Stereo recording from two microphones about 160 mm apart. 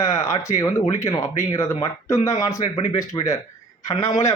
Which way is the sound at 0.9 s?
20° left (ahead or behind).